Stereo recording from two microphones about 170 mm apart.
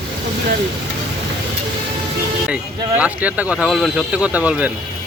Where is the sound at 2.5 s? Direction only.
10° right (ahead or behind).